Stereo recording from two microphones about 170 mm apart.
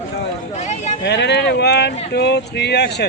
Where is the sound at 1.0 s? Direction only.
90° left.